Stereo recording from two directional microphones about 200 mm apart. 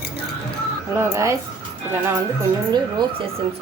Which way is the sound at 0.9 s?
15° right (ahead or behind).